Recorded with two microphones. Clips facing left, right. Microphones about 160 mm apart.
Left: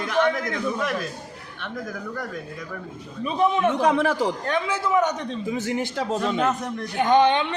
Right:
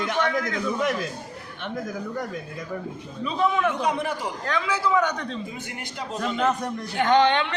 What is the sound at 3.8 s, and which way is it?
Speech, 90° left.